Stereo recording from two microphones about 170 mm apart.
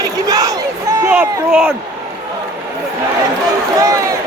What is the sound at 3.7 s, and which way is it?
Speech, 20° right (ahead or behind).